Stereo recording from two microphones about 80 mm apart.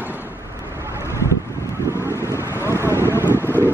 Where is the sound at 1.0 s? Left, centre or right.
Left.